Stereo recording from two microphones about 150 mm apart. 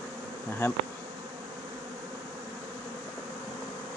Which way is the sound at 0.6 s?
15° left (ahead or behind).